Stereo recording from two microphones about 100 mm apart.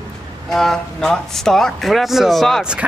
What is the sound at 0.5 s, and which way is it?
Speech, 5° left (ahead or behind).